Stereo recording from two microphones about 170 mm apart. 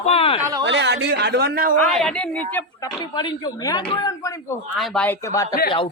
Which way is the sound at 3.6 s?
25° left (ahead or behind).